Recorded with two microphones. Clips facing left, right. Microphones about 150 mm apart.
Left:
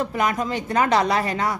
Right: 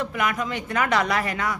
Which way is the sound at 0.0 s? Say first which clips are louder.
Left 3 dB; 35° left (ahead or behind).